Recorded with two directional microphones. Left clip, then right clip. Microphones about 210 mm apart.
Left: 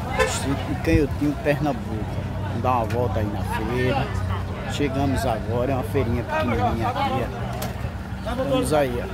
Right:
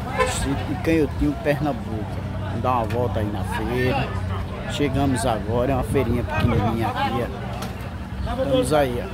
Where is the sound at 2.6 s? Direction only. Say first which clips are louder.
Even; 5° right (ahead or behind).